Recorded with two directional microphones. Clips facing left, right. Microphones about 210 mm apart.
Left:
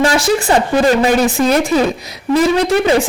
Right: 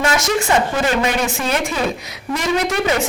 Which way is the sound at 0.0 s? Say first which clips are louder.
Left 5 dB; 35° left (ahead or behind).